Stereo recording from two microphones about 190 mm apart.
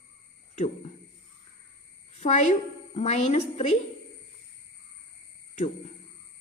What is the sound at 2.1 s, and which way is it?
A woman's voice, 40° left (ahead or behind).